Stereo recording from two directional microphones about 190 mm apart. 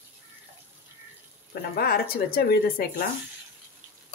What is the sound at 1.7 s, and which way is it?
Speech, 50° left (ahead or behind).